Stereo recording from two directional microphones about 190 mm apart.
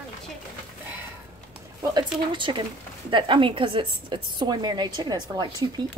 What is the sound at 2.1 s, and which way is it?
A woman's voice, 25° right (ahead or behind).